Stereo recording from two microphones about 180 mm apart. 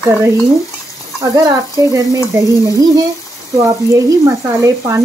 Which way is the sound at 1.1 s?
20° right (ahead or behind).